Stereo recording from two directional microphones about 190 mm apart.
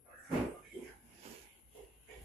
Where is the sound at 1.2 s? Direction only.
30° right (ahead or behind).